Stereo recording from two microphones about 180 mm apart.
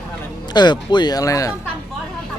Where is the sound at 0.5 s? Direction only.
25° left (ahead or behind).